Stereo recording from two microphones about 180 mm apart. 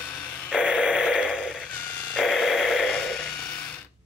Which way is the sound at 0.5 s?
5° right (ahead or behind).